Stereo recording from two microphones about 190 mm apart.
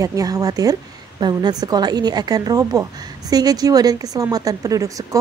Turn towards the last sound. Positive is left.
turn(degrees=-15)  # may be behind; listen again after turning